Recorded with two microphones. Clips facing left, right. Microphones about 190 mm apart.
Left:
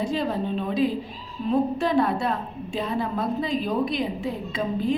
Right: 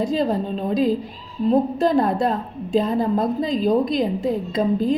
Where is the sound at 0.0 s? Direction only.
40° right (ahead or behind).